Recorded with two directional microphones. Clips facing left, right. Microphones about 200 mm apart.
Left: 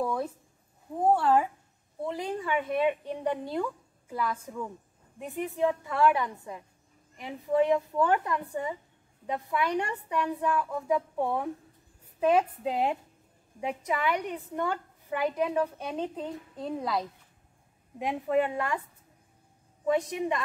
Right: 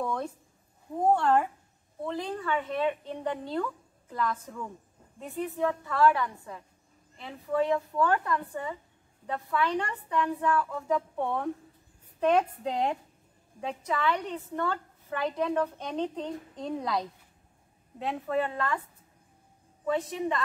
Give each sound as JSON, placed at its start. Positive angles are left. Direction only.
{"t": 0.0, "sound": "a woman's voice", "side_deg": 5}
{"t": 17.9, "sound": "a woman's voice", "side_deg": 15}
{"t": 19.9, "sound": "a woman's voice", "side_deg": 15}